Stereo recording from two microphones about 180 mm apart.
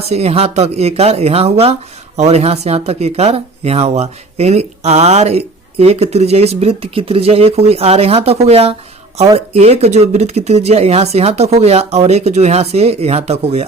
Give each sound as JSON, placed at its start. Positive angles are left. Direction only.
{"t": 0.1, "sound": "speech", "side_deg": -35}
{"t": 9.2, "sound": "speech", "side_deg": -25}
{"t": 9.6, "sound": "speech", "side_deg": -35}